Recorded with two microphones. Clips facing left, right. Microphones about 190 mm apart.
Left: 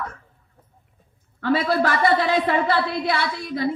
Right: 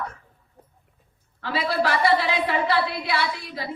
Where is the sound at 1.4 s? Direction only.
50° left (ahead or behind).